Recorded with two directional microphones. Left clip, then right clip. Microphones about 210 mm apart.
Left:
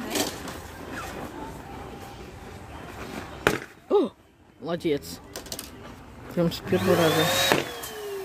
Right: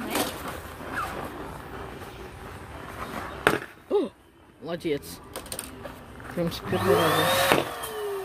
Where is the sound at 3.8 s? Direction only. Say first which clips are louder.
Left 4 dB; 30° left (ahead or behind).